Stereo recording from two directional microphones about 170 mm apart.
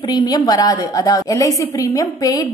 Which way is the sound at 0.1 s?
25° left (ahead or behind).